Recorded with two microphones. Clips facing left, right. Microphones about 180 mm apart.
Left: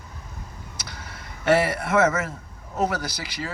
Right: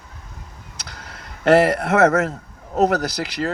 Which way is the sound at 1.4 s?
65° right (ahead or behind).